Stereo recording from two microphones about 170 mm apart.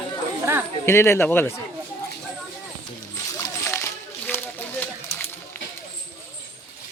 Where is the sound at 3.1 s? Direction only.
15° left (ahead or behind).